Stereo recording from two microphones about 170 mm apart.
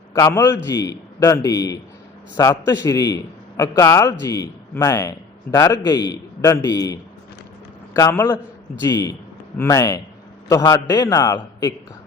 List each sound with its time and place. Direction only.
0.1 s a man's voice: 20° left (ahead or behind)